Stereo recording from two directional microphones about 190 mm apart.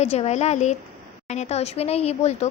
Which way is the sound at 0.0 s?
35° left (ahead or behind).